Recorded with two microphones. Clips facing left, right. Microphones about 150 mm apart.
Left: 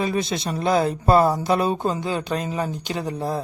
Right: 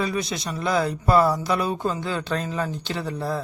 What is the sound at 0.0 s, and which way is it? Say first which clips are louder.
A man's voice: left 3 dB; 25° left (ahead or behind).